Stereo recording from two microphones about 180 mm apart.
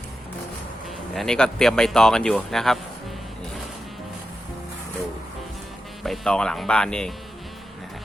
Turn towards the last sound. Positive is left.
turn(degrees=5)  # may be behind; listen again after turning